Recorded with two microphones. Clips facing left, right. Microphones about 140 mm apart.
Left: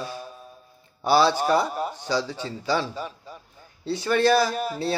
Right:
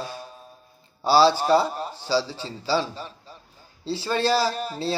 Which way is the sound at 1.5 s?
10° left (ahead or behind).